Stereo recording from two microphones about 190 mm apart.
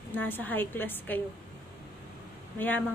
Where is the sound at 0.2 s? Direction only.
10° left (ahead or behind).